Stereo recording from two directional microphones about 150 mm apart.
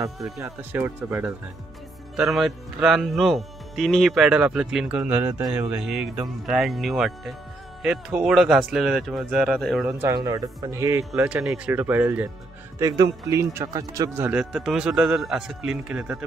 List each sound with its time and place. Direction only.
0.4 s speech: 15° right (ahead or behind)
2.1 s speech: centre (ahead or behind)
9.8 s speech: 15° right (ahead or behind)
10.1 s speech: 25° right (ahead or behind)
11.1 s speech: 10° right (ahead or behind)
12.7 s speech: 25° right (ahead or behind)
14.2 s speech: 5° right (ahead or behind)